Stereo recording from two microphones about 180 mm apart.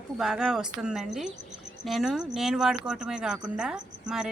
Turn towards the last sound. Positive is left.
turn(degrees=-5)  # may be behind; listen again after turning